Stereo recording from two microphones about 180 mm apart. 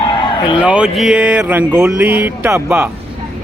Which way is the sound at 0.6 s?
5° right (ahead or behind).